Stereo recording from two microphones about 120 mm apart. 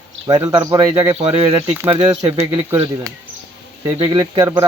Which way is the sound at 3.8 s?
35° right (ahead or behind).